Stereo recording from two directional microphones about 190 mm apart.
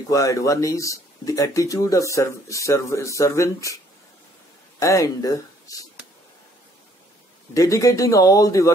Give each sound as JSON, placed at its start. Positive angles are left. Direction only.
{"t": 0.1, "sound": "speech", "side_deg": 15}
{"t": 7.5, "sound": "speech", "side_deg": 15}